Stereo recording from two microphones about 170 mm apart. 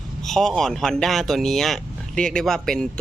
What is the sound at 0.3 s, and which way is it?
Speech, centre (ahead or behind).